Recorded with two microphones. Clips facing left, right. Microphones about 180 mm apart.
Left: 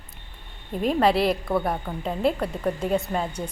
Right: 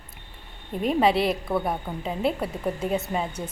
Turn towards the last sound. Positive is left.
turn(degrees=-5)  # may be behind; listen again after turning